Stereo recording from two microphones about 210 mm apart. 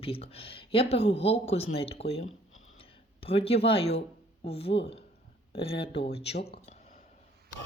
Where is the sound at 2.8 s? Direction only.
25° left (ahead or behind).